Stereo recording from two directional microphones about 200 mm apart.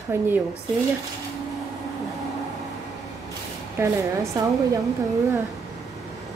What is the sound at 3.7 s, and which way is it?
A woman's voice, 15° right (ahead or behind).